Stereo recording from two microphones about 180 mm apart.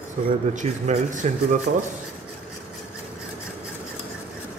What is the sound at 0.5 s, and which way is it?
A man's voice, 40° right (ahead or behind).